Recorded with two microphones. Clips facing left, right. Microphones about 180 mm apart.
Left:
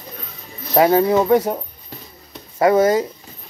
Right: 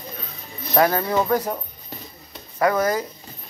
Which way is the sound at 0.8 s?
20° left (ahead or behind).